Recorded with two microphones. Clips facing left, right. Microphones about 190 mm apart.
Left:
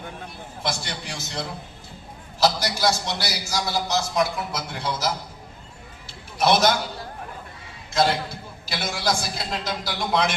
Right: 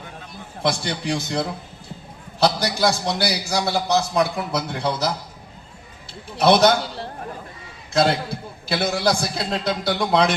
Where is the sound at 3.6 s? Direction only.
60° right (ahead or behind).